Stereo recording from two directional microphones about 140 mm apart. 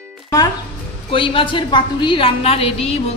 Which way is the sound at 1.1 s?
40° left (ahead or behind).